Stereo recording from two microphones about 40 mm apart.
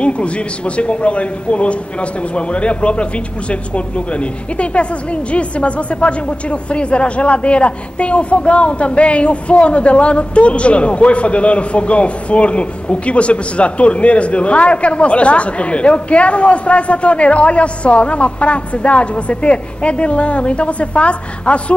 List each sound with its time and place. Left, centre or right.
0.0 s a man's voice: left